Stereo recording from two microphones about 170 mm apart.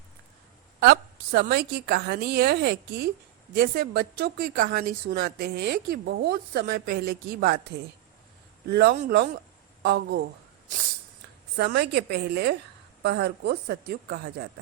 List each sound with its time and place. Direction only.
0.8 s a woman's voice: 70° right (ahead or behind)
8.7 s a woman's voice: 70° right (ahead or behind)
10.7 s snort: 50° right (ahead or behind)
11.5 s a woman's voice: 75° right (ahead or behind)